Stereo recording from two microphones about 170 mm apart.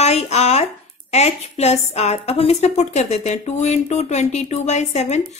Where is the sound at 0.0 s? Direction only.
40° left (ahead or behind).